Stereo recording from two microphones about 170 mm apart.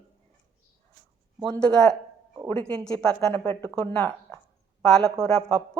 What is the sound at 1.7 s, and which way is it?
A woman's voice, 5° left (ahead or behind).